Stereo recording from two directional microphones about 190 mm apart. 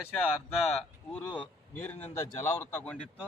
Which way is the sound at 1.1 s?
5° left (ahead or behind).